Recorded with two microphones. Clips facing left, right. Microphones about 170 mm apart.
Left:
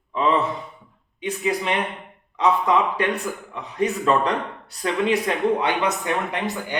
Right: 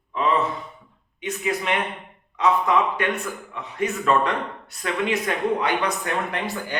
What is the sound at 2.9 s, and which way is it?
A man's voice, 35° left (ahead or behind).